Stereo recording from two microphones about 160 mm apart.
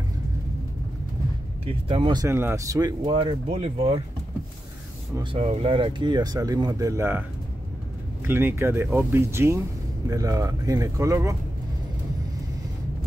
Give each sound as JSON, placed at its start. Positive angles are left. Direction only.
{"t": 1.7, "sound": "speech", "side_deg": -30}
{"t": 2.2, "sound": "speech", "side_deg": -15}
{"t": 3.1, "sound": "speech", "side_deg": -35}
{"t": 5.2, "sound": "speech", "side_deg": -35}
{"t": 8.3, "sound": "speech", "side_deg": -15}